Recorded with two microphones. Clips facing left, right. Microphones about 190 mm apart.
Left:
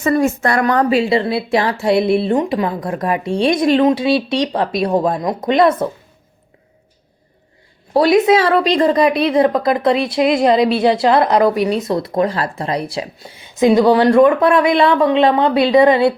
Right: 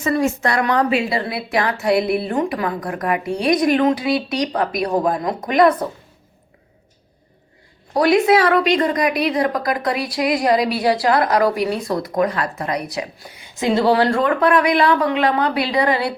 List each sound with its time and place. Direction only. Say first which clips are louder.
0.0 s a woman's voice: left 3 dB; 50° left (ahead or behind); by 5.7 s 25° left (ahead or behind)
7.9 s a woman's voice: left 3 dB; 20° left (ahead or behind)